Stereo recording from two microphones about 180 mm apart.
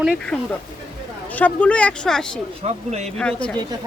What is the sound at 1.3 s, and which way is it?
Speech, 10° left (ahead or behind).